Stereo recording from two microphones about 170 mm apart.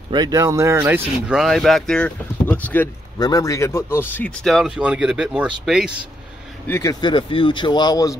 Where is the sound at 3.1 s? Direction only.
20° left (ahead or behind).